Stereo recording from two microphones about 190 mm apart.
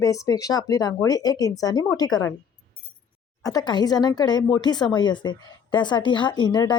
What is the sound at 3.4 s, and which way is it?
Speech, 20° left (ahead or behind).